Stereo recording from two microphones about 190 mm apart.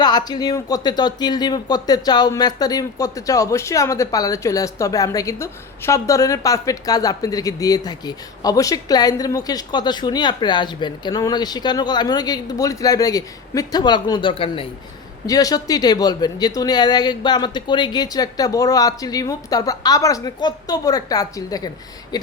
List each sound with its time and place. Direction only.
0.0 s speech: 20° left (ahead or behind)